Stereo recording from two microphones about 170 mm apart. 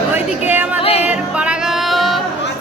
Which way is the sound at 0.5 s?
10° right (ahead or behind).